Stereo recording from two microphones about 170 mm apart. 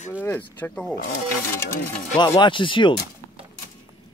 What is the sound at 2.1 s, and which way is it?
Speech, 25° left (ahead or behind).